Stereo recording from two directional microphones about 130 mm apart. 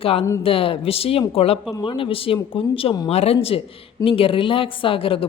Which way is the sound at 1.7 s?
35° left (ahead or behind).